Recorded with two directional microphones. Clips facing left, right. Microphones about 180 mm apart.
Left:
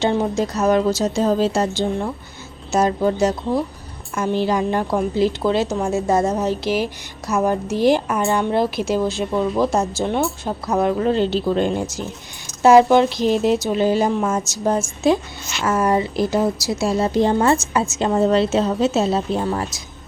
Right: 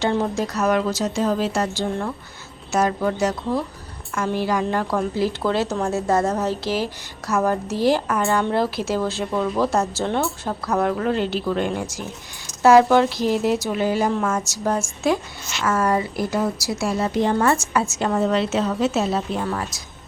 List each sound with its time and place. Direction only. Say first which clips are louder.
0.0 s speech: left 2 dB; 20° left (ahead or behind)